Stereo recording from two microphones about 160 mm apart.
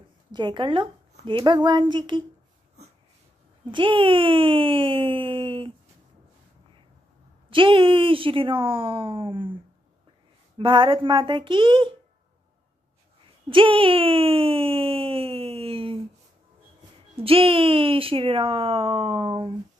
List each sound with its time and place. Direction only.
0.3 s speech: 30° right (ahead or behind)
3.7 s speech: 30° right (ahead or behind)
7.4 s speech: 30° right (ahead or behind)
10.6 s speech: 30° right (ahead or behind)
13.5 s speech: 35° right (ahead or behind)
17.1 s speech: 35° right (ahead or behind)